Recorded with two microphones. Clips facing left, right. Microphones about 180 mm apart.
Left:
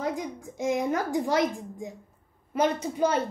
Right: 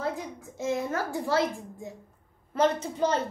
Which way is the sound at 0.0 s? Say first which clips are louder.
Left 2 dB; 15° left (ahead or behind).